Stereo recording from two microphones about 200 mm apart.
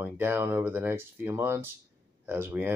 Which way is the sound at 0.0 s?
10° right (ahead or behind).